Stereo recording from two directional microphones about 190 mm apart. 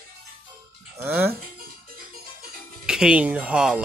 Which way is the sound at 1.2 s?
50° right (ahead or behind).